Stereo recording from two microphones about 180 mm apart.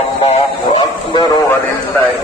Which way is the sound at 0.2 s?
35° left (ahead or behind).